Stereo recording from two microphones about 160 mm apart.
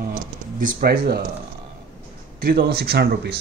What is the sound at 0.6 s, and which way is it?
Speech, 80° right.